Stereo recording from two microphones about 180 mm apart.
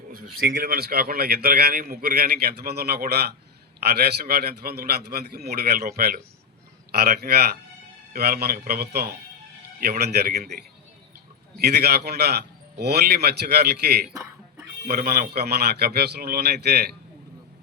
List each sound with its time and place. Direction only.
0.1 s a man's voice: 50° right (ahead or behind)
11.5 s a man's voice: 65° right (ahead or behind)